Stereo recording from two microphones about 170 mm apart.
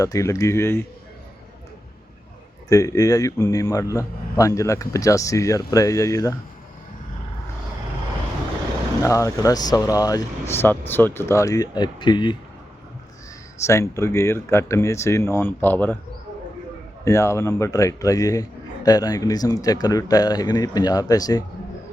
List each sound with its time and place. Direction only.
0.0 s speech: 20° left (ahead or behind)
2.6 s a man's voice: 20° left (ahead or behind)
9.0 s a man's voice: 20° left (ahead or behind)
13.7 s speech: 15° left (ahead or behind)
17.1 s a man's voice: 15° left (ahead or behind)